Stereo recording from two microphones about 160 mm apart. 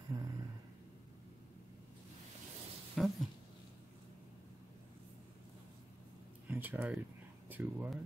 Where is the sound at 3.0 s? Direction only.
Centre (ahead or behind).